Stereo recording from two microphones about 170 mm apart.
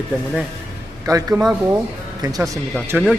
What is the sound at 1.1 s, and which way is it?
Speech, 20° right (ahead or behind).